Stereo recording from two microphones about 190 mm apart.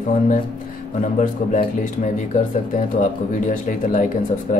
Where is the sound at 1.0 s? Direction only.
40° left (ahead or behind).